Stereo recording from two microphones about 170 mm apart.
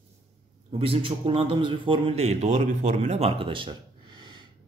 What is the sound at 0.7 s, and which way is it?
Speech, 35° right (ahead or behind).